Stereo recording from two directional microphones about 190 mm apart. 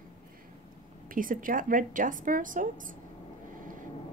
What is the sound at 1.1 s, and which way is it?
Speech, 45° right (ahead or behind).